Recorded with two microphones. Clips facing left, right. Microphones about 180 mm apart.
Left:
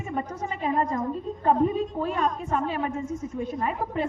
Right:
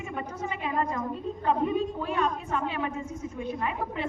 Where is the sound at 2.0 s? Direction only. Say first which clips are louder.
Left 2 dB; 40° left (ahead or behind).